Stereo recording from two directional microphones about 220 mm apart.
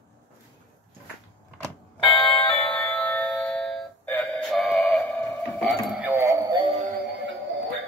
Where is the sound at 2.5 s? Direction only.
5° left (ahead or behind); by 6.7 s 20° right (ahead or behind).